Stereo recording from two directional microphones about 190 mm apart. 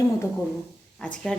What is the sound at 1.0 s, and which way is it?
Speech, 5° left (ahead or behind).